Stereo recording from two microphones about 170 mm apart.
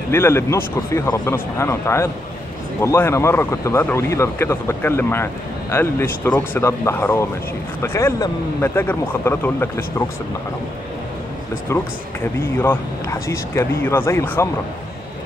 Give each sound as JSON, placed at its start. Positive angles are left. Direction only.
{"t": 0.1, "sound": "speech", "side_deg": 15}
{"t": 11.7, "sound": "speech", "side_deg": 15}